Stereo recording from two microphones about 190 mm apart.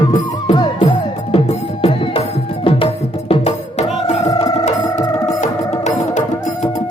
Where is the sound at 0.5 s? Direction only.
20° left (ahead or behind).